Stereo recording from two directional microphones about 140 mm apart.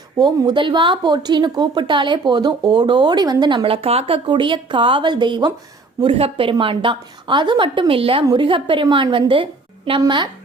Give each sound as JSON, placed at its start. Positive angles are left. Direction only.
{"t": 0.2, "sound": "a woman's voice", "side_deg": -35}